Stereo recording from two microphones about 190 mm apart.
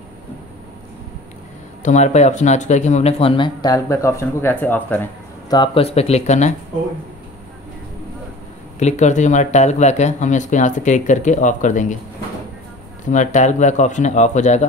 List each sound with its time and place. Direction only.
1.8 s speech: 40° left (ahead or behind); by 5.1 s 10° left (ahead or behind)
5.5 s speech: 25° left (ahead or behind)
8.7 s speech: 35° left (ahead or behind)
13.0 s speech: 40° left (ahead or behind)